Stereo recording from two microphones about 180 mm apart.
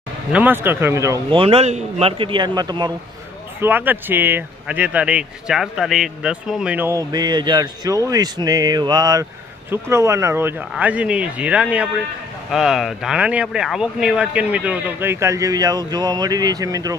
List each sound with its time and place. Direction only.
0.3 s speech: 10° right (ahead or behind)
1.3 s a man's voice: 30° right (ahead or behind)
3.6 s speech: 10° right (ahead or behind)